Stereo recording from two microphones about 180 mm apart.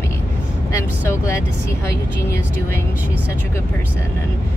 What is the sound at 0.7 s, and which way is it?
Speech, 15° left (ahead or behind).